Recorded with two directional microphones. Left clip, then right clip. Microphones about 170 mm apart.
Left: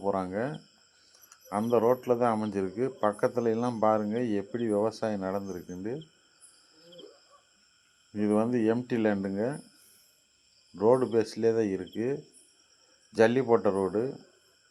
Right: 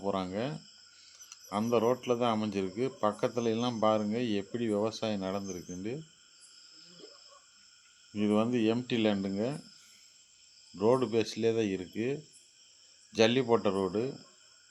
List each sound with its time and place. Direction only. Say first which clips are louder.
0.0 s speech: left 3 dB; centre (ahead or behind)
2.6 s speech: left 3 dB; 15° right (ahead or behind)
2.8 s speech: left 3 dB; 5° right (ahead or behind)
4.9 s speech: left 3 dB; centre (ahead or behind)
8.1 s speech: left 2 dB; 10° right (ahead or behind)
10.8 s speech: left 4 dB; 15° right (ahead or behind)
11.1 s speech: left 3 dB; centre (ahead or behind)
13.1 s speech: left 3 dB; 5° right (ahead or behind)